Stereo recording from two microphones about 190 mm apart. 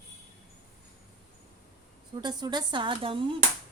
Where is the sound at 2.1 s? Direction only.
20° right (ahead or behind).